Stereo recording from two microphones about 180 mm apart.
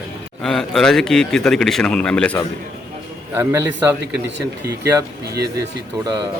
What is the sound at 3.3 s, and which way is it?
Speech, 15° right (ahead or behind).